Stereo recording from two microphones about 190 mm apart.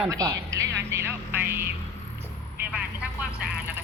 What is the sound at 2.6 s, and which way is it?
Vehicle, 5° right (ahead or behind).